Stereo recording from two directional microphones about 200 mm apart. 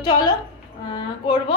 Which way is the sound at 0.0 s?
20° left (ahead or behind).